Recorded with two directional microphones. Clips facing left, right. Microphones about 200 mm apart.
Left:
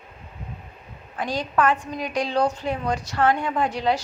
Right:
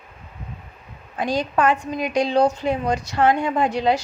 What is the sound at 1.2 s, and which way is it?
A woman's voice, 10° right (ahead or behind).